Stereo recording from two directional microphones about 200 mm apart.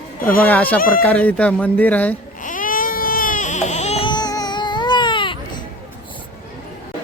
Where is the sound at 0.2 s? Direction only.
45° left (ahead or behind).